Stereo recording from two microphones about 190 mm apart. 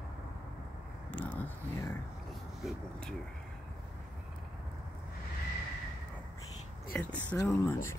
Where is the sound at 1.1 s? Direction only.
5° left (ahead or behind).